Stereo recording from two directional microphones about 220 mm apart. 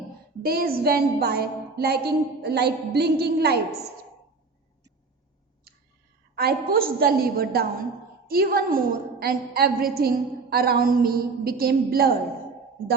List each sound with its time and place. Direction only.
0.4 s a woman's voice: 45° right (ahead or behind)
6.3 s a woman's voice: 45° right (ahead or behind)